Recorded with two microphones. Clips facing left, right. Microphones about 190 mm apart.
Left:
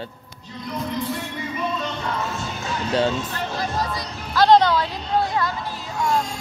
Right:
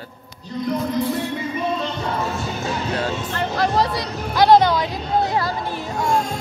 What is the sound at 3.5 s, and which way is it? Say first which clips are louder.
Music: right 7 dB; 70° right (ahead or behind).